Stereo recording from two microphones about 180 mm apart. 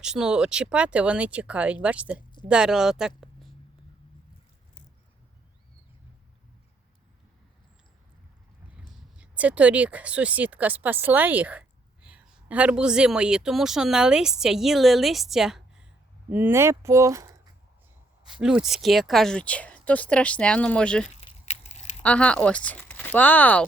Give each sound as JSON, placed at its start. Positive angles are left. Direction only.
{"t": 0.0, "sound": "speech", "side_deg": -5}
{"t": 9.1, "sound": "speech", "side_deg": -5}
{"t": 18.3, "sound": "speech", "side_deg": -5}
{"t": 21.2, "sound": "a sound", "side_deg": 35}
{"t": 22.0, "sound": "speech", "side_deg": 5}